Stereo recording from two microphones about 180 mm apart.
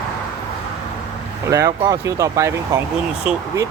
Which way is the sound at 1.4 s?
15° right (ahead or behind).